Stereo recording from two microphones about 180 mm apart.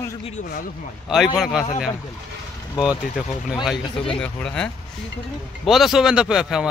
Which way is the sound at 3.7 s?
30° left (ahead or behind).